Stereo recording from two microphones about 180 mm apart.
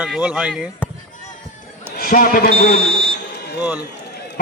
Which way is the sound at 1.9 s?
55° left (ahead or behind).